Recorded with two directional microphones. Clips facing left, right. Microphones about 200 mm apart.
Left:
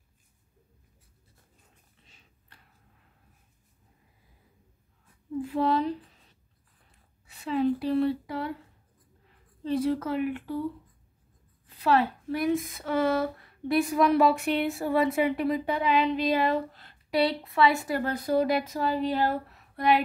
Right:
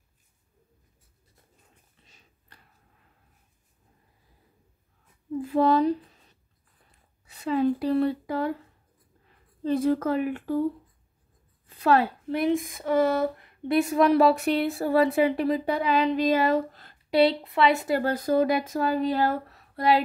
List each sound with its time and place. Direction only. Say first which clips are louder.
5.4 s speech: right 5 dB; 40° right (ahead or behind)
7.2 s speech: right 2 dB; 40° right (ahead or behind)
9.6 s speech: right 3 dB; 45° right (ahead or behind)
11.8 s a woman's voice: right 2 dB; 45° right (ahead or behind)
12.3 s speech: right 2 dB; 25° right (ahead or behind); by 16.9 s 45° right (ahead or behind)
17.1 s speech: right 5 dB; 25° right (ahead or behind); by 19.4 s 45° right (ahead or behind)